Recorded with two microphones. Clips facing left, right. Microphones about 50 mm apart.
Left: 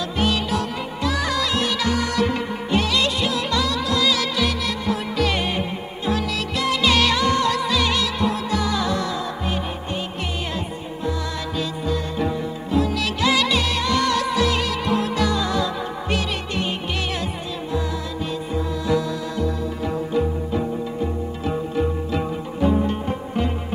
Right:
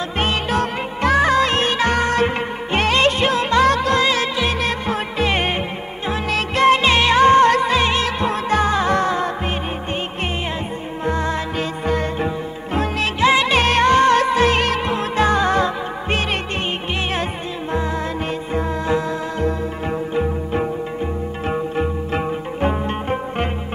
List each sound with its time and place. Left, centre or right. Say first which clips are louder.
0.2 s music: right 2 dB; right
11.1 s music: right 6 dB; right
18.5 s music: right 2 dB; right